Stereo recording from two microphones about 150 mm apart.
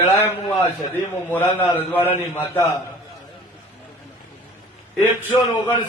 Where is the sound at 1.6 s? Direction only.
10° left (ahead or behind).